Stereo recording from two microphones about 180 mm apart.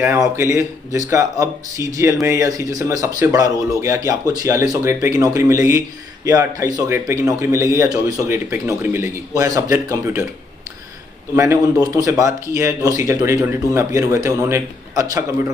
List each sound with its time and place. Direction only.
0.0 s speech: 10° right (ahead or behind)
11.3 s speech: 15° right (ahead or behind)